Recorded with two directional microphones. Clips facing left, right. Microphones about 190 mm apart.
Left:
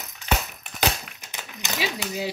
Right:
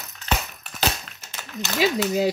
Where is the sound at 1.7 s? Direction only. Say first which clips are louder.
Right 8 dB; 45° right (ahead or behind).